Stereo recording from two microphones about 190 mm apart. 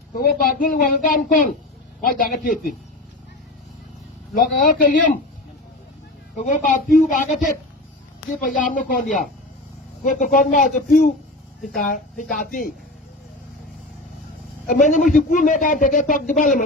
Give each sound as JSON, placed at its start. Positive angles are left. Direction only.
{"t": 0.2, "sound": "a man's voice", "side_deg": 45}
{"t": 4.6, "sound": "a man's voice", "side_deg": 45}
{"t": 6.4, "sound": "a man's voice", "side_deg": 40}
{"t": 8.4, "sound": "a man's voice", "side_deg": 45}
{"t": 14.7, "sound": "a man's voice", "side_deg": 40}